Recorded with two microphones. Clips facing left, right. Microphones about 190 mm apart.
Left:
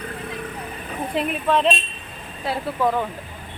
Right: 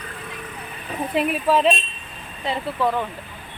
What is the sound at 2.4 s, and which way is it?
Speech, 10° left (ahead or behind).